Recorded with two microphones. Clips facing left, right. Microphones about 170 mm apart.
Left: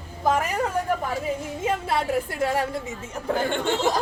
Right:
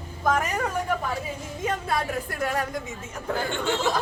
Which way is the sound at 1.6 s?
25° left (ahead or behind).